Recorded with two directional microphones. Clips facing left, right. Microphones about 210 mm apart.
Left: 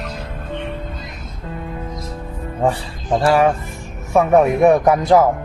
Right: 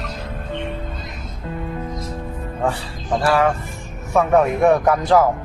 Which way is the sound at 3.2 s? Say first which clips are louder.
Left 3 dB; 20° left (ahead or behind).